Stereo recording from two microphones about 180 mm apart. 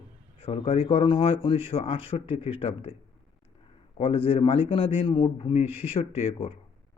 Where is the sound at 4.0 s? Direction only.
30° left (ahead or behind).